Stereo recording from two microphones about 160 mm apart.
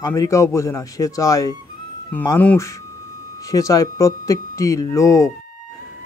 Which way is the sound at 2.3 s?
10° left (ahead or behind).